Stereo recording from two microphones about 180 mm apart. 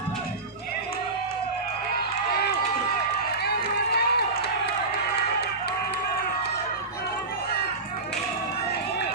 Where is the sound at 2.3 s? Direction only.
60° left (ahead or behind).